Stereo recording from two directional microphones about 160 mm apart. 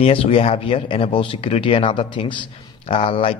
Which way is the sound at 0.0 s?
35° left (ahead or behind).